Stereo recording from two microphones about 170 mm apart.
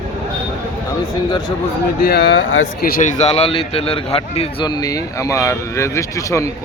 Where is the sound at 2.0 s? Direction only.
75° left (ahead or behind).